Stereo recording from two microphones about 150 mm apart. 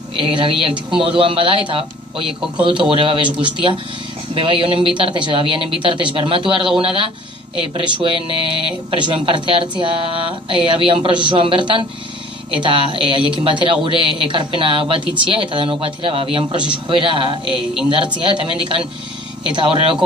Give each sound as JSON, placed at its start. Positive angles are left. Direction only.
{"t": 0.2, "sound": "a woman's voice", "side_deg": -35}
{"t": 2.2, "sound": "speech", "side_deg": -5}
{"t": 2.6, "sound": "a woman's voice", "side_deg": -35}